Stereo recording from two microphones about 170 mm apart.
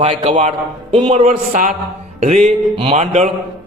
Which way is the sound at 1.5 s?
50° right (ahead or behind).